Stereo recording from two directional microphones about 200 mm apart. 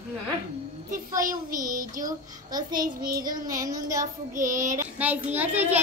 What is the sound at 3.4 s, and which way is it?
Speech, 15° right (ahead or behind).